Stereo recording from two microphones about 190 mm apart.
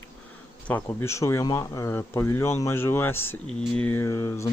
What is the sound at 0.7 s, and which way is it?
Speech, 15° left (ahead or behind).